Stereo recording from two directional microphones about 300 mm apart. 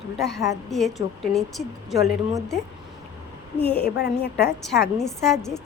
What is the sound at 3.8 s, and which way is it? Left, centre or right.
Speech, left.